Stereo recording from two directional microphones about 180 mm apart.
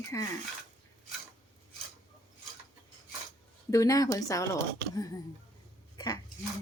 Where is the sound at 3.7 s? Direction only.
20° left (ahead or behind).